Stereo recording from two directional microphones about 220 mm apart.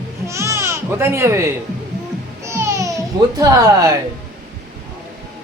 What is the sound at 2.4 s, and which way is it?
Babbling, 10° right (ahead or behind).